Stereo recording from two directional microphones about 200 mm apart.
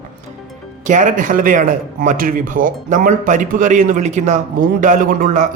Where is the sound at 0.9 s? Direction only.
40° right (ahead or behind).